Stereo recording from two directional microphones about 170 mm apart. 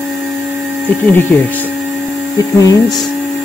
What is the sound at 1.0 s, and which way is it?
Speech, 15° left (ahead or behind).